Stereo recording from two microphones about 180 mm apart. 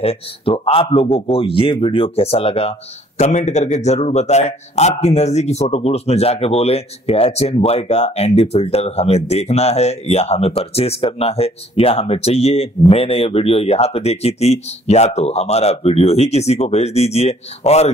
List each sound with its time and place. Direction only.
0.0 s a man's voice: 30° left (ahead or behind)